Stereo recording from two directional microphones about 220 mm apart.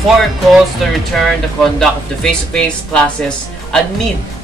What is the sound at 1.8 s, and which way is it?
Speech, 5° left (ahead or behind).